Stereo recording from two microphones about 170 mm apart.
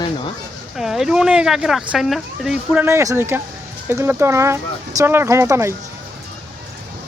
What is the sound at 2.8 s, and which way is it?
Speech, 15° right (ahead or behind).